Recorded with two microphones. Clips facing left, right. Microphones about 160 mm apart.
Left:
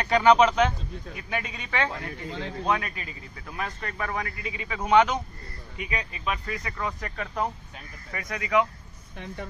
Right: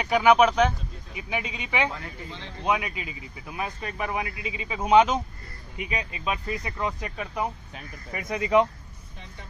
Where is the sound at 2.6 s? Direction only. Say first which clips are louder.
Right 2 dB; 10° right (ahead or behind).